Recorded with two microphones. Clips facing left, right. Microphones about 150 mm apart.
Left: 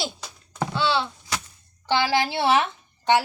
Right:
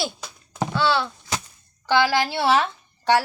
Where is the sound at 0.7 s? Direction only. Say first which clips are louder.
Right 2 dB; 20° left (ahead or behind).